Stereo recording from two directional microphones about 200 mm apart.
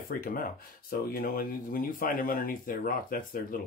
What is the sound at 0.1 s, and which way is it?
Speech, 45° left (ahead or behind).